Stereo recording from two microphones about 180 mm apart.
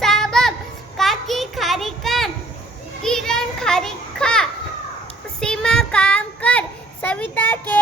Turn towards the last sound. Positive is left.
turn(degrees=10)  # may be behind; listen again after turning